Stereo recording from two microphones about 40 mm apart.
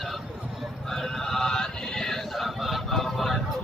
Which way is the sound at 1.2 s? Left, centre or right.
Centre.